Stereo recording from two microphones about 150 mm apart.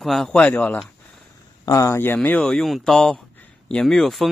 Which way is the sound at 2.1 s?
5° left (ahead or behind).